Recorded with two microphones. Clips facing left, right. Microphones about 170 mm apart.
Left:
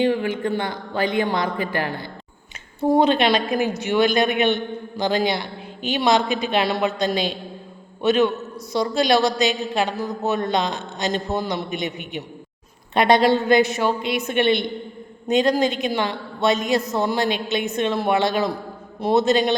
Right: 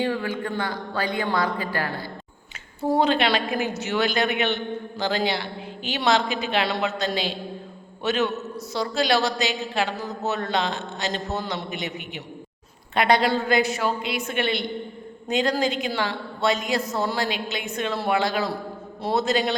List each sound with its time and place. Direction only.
0.0 s a woman's voice: 20° left (ahead or behind)
12.9 s a woman's voice: 20° left (ahead or behind)